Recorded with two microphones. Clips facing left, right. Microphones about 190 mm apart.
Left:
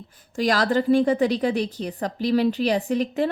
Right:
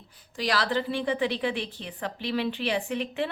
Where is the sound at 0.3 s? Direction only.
45° left (ahead or behind).